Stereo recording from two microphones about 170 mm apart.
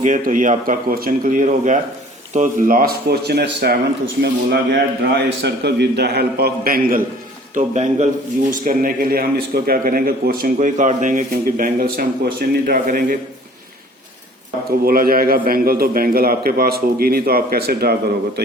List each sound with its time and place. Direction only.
0.0 s a man's voice: 50° right (ahead or behind)
7.5 s speech: 45° right (ahead or behind)
8.4 s speech: 55° right (ahead or behind)
14.8 s speech: 60° right (ahead or behind)